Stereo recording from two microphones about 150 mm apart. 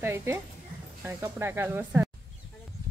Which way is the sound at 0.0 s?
15° right (ahead or behind).